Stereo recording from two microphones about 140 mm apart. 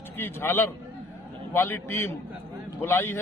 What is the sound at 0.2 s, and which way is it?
Speech, 15° left (ahead or behind).